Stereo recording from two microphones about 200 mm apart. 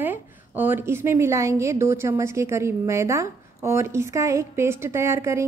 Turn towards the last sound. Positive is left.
turn(degrees=-15)  # may be behind; listen again after turning